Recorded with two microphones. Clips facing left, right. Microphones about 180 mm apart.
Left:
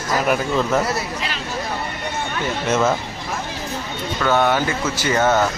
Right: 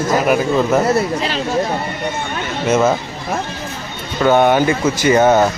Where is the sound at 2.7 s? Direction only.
10° right (ahead or behind).